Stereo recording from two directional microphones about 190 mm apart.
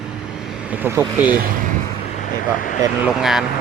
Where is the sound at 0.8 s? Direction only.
10° right (ahead or behind).